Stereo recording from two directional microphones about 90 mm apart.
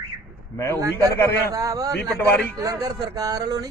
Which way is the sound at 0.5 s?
30° left (ahead or behind).